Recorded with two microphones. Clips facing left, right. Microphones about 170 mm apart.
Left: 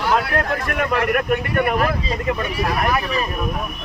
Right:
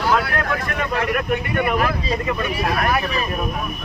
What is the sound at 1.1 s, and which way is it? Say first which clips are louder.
Speech: left 2 dB; 45° left (ahead or behind).